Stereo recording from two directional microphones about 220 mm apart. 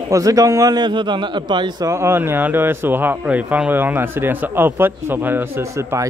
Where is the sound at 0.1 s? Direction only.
15° right (ahead or behind).